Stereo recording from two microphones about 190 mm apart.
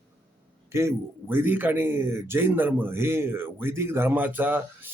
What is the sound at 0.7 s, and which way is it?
Speech, 15° right (ahead or behind).